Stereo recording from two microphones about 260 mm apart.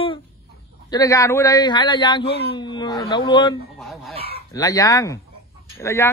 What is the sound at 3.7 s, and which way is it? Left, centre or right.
Fowl, centre.